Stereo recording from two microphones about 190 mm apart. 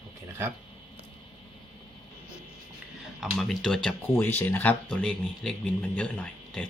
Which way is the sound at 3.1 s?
Centre (ahead or behind).